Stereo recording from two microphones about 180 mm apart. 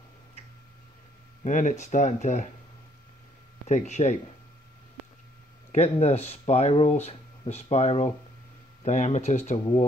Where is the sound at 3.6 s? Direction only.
40° left (ahead or behind).